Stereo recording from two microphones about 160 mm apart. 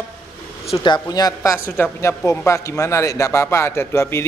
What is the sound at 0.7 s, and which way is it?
A woman's voice, 30° left (ahead or behind).